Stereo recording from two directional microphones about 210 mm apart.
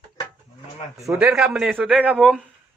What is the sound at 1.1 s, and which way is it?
A man's voice, 5° right (ahead or behind).